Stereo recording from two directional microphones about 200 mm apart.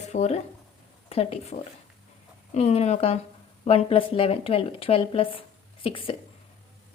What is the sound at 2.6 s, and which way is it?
A woman's voice, 30° left (ahead or behind).